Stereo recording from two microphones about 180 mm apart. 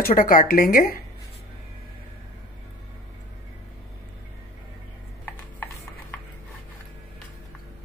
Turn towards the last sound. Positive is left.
turn(degrees=15)  # may be behind; listen again after turning